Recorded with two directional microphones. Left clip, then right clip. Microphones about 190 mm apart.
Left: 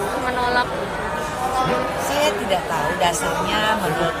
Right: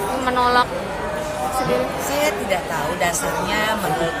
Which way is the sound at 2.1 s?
Centre (ahead or behind).